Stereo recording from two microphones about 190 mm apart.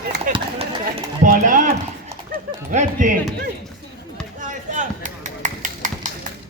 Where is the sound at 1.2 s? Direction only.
45° right (ahead or behind).